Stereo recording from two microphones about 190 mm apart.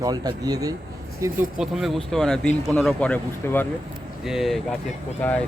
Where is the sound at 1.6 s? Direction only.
Centre (ahead or behind).